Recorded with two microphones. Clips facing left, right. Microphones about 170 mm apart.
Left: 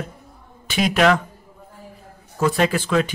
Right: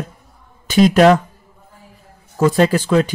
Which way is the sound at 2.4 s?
40° right (ahead or behind).